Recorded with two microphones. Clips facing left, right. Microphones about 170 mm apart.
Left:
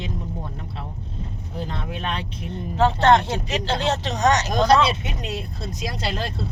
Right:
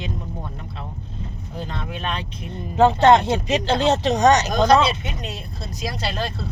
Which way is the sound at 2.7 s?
15° right (ahead or behind).